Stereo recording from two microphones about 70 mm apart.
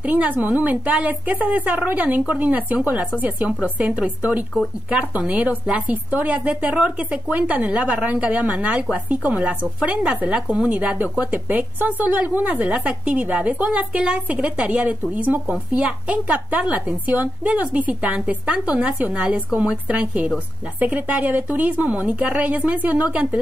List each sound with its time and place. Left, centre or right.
0.0 s a woman's voice: right